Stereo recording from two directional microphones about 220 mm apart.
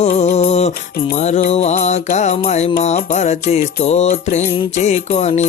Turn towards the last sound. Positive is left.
turn(degrees=30)  # may be behind; listen again after turning